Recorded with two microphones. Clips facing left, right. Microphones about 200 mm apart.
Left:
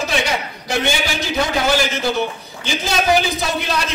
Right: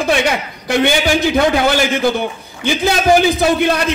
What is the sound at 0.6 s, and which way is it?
A man's voice, 55° right (ahead or behind).